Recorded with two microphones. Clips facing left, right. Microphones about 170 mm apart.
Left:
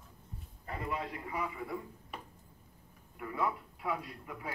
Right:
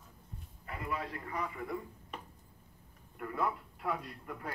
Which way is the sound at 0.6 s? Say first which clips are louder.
Left 2 dB; 30° left (ahead or behind).